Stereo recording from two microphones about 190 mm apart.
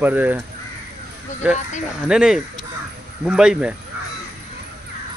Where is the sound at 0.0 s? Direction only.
10° right (ahead or behind).